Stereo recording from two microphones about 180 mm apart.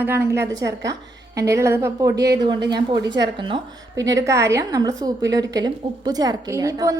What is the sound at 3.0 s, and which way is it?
Speech, 75° right (ahead or behind).